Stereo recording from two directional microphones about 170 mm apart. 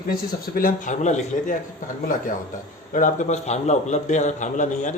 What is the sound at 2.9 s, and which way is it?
A man's voice, 50° left (ahead or behind).